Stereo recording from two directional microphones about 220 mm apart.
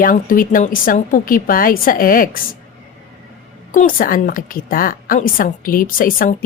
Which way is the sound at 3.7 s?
40° left (ahead or behind).